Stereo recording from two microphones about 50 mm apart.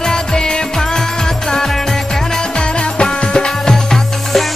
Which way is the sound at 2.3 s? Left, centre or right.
Centre.